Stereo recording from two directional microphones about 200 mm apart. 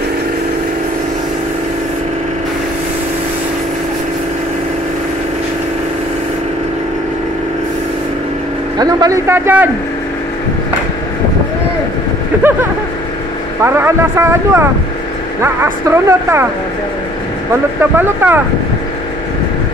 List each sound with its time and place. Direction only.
8.7 s speech: 20° right (ahead or behind)
13.6 s speech: 10° right (ahead or behind)
17.5 s speech: 10° right (ahead or behind)